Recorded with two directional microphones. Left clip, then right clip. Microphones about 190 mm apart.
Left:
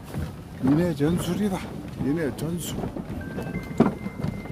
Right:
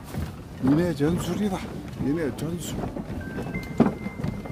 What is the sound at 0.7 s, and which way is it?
Speech, centre (ahead or behind).